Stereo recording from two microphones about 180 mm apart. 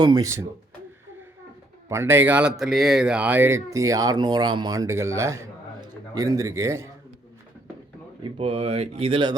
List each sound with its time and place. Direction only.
0.0 s speech: 20° right (ahead or behind)
1.9 s speech: 15° right (ahead or behind)
8.2 s speech: 35° right (ahead or behind)